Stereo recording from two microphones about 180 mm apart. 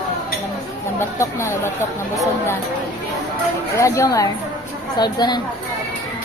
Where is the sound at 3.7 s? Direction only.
15° left (ahead or behind).